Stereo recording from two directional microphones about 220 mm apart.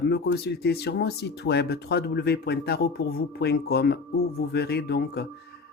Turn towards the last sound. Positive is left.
turn(degrees=45)  # may be behind; listen again after turning